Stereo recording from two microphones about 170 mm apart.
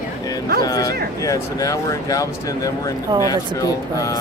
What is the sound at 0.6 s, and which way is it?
Speech, 20° left (ahead or behind).